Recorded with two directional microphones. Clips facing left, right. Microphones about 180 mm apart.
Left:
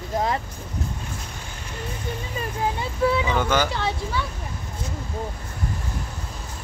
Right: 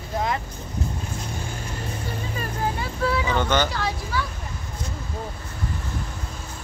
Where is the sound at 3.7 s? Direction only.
25° left (ahead or behind).